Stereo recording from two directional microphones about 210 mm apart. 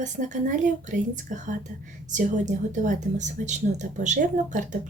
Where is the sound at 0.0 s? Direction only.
35° right (ahead or behind).